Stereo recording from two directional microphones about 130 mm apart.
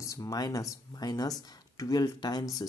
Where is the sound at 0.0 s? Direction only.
25° left (ahead or behind).